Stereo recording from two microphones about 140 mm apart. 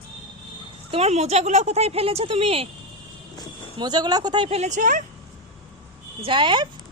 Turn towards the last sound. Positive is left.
turn(degrees=-35)  # may be behind; listen again after turning